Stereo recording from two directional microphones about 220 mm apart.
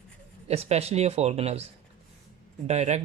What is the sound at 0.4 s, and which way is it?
Speech, 30° right (ahead or behind).